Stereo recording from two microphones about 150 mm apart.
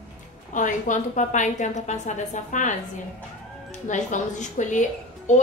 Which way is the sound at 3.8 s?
55° left (ahead or behind).